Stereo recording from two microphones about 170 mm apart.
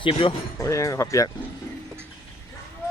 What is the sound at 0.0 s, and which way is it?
Speech, 30° left (ahead or behind).